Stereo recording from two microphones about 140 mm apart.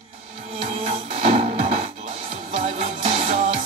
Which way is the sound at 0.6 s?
45° right (ahead or behind).